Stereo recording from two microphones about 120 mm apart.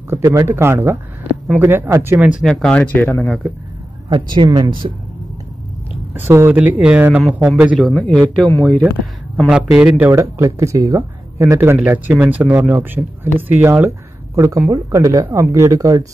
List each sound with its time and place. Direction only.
0.1 s speech: 25° right (ahead or behind)
2.4 s speech: 5° left (ahead or behind)
4.1 s speech: 40° right (ahead or behind)
6.1 s speech: 20° right (ahead or behind)
7.9 s speech: 5° left (ahead or behind)
9.5 s speech: 10° right (ahead or behind)
10.1 s speech: 25° right (ahead or behind)